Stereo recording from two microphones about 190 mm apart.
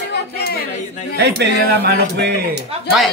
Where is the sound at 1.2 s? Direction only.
60° right (ahead or behind).